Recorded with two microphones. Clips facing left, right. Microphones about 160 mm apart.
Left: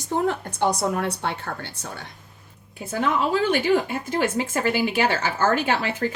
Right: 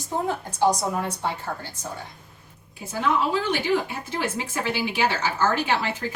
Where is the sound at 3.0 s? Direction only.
50° left (ahead or behind).